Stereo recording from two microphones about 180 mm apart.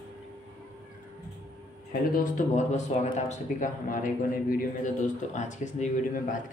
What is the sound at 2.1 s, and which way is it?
A man's voice, 45° left (ahead or behind).